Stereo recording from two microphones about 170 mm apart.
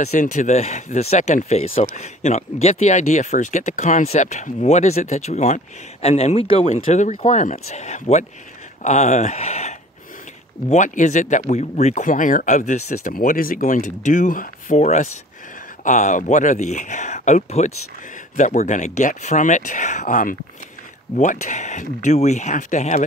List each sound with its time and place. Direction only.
0.0 s speech: 45° left (ahead or behind)